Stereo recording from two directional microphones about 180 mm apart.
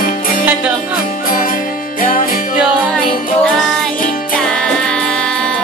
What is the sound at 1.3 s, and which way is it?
Music, 50° left (ahead or behind).